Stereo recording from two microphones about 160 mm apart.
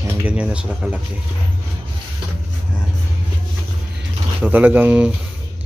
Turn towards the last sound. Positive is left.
turn(degrees=-10)  # may be behind; listen again after turning